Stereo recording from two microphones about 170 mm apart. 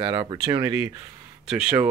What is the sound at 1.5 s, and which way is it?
Speech, 5° right (ahead or behind).